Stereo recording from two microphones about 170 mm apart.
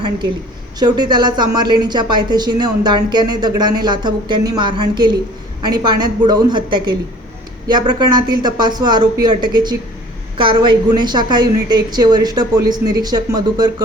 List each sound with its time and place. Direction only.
0.8 s a woman's voice: 25° right (ahead or behind)